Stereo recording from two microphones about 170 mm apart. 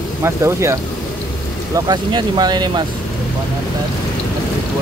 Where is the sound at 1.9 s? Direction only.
25° right (ahead or behind).